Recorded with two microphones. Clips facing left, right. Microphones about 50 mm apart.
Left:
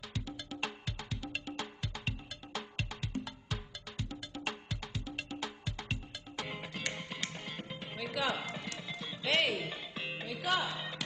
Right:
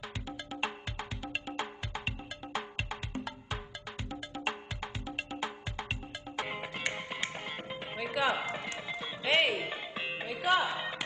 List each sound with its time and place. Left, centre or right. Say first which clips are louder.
0.1 s music: right 2 dB; right